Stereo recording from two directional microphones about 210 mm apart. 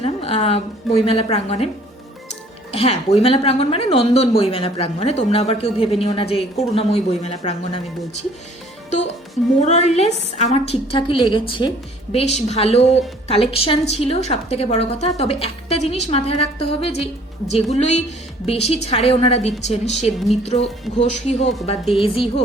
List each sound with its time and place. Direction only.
0.0 s speech: 30° left (ahead or behind)
2.7 s speech: 30° left (ahead or behind)
8.9 s music: 35° left (ahead or behind)
9.6 s speech: 30° left (ahead or behind)